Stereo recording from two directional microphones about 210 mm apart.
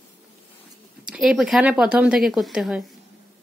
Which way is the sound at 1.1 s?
Centre (ahead or behind).